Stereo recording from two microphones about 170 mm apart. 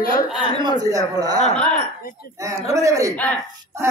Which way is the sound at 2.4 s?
20° right (ahead or behind).